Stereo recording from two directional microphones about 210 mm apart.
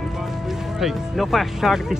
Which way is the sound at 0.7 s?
Centre (ahead or behind).